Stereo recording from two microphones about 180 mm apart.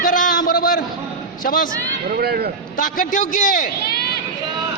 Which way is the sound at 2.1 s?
60° right (ahead or behind).